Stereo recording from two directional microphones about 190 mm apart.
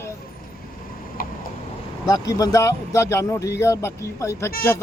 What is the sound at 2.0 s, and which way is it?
A man's voice, 20° left (ahead or behind).